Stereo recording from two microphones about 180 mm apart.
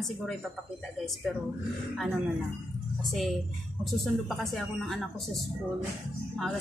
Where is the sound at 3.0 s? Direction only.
Centre (ahead or behind).